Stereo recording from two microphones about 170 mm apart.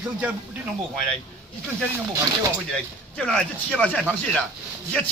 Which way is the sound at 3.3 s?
5° left (ahead or behind).